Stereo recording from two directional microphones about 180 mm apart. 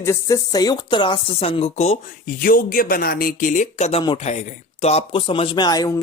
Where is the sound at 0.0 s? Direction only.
15° left (ahead or behind); by 2.3 s 40° left (ahead or behind).